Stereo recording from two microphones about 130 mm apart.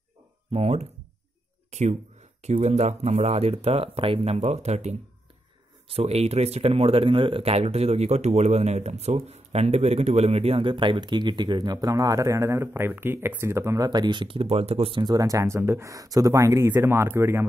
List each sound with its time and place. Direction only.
0.5 s speech: 55° right (ahead or behind)
5.9 s speech: 50° right (ahead or behind); by 13.8 s 20° right (ahead or behind)
13.8 s speech: 35° right (ahead or behind); by 17.5 s 20° right (ahead or behind)